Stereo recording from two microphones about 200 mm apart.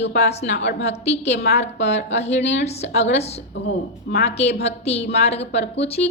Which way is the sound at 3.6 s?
50° left (ahead or behind).